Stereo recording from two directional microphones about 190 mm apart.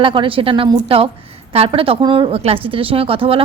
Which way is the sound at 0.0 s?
25° right (ahead or behind).